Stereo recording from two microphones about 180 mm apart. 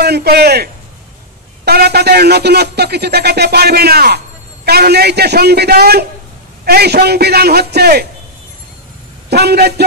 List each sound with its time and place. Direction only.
0.0 s speech: 60° right (ahead or behind)
9.3 s speech: 65° right (ahead or behind)